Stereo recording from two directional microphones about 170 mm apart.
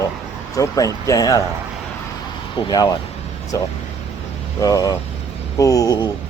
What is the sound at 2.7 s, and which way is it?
Speech, 25° left (ahead or behind).